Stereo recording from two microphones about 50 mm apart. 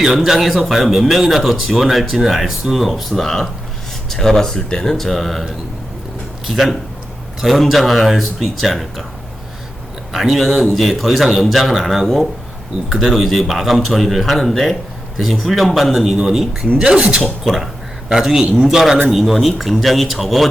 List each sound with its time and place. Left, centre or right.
0.0 s a man's voice: centre
6.5 s a man's voice: centre
10.1 s a man's voice: centre
16.7 s speech: centre
17.4 s a man's voice: centre